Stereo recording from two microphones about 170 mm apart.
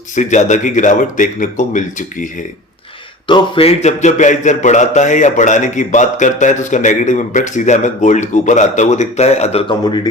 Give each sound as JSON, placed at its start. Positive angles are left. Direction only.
{"t": 0.2, "sound": "speech", "side_deg": 45}
{"t": 3.2, "sound": "speech", "side_deg": 30}